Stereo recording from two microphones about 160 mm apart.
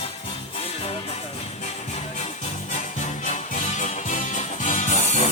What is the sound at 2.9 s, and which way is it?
Music, 45° left (ahead or behind).